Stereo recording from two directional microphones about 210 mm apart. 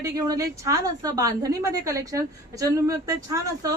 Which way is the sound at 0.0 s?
15° right (ahead or behind).